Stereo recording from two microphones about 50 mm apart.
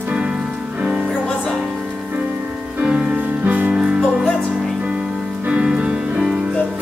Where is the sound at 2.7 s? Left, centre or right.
Centre.